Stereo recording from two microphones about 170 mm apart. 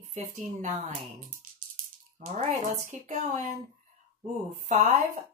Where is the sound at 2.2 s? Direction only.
45° right (ahead or behind).